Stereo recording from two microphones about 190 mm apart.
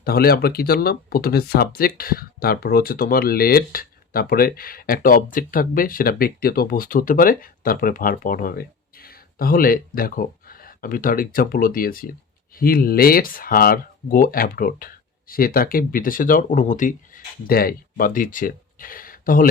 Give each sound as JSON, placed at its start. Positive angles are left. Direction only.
{"t": 0.0, "sound": "speech", "side_deg": 55}